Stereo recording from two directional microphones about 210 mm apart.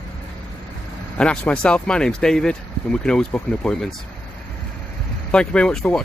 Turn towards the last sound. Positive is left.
turn(degrees=5)  # may be behind; listen again after turning